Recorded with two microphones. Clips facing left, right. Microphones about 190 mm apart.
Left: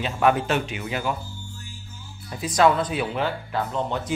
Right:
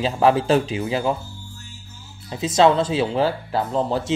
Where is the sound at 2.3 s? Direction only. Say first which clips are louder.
Right 3 dB; 25° right (ahead or behind).